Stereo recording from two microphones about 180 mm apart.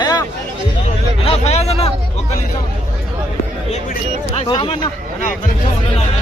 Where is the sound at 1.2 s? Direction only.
35° left (ahead or behind).